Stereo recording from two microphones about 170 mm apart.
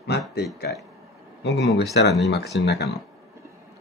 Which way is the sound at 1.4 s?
85° left.